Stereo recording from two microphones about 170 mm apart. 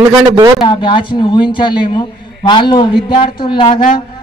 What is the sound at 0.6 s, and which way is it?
A man's voice, 30° left (ahead or behind).